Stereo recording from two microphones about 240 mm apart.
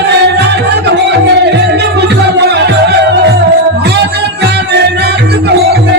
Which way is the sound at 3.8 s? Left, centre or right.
Right.